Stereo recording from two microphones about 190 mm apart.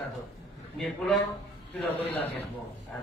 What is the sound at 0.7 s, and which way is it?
Speech, centre (ahead or behind).